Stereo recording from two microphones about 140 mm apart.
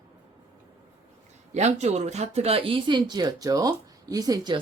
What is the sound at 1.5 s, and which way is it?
Speech, 55° right (ahead or behind).